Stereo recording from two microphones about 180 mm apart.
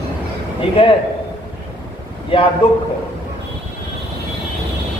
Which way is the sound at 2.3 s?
30° left (ahead or behind).